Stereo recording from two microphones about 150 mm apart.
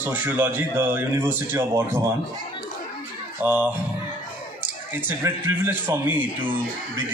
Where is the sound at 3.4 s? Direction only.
10° right (ahead or behind).